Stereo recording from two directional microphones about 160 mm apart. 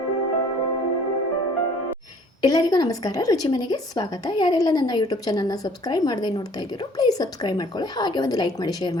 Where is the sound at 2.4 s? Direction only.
25° left (ahead or behind).